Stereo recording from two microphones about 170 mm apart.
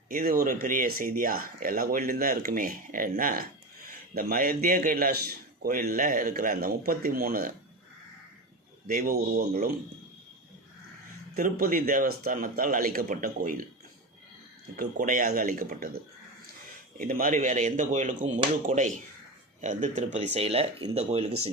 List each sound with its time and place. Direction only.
0.1 s speech: 60° right (ahead or behind)
8.9 s speech: 60° right (ahead or behind)
11.3 s speech: 55° right (ahead or behind)
14.8 s speech: 50° right (ahead or behind)
17.0 s speech: 55° right (ahead or behind); by 21.5 s 35° right (ahead or behind)